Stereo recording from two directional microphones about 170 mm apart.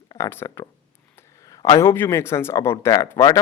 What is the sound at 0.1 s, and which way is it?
Speech, 15° left (ahead or behind).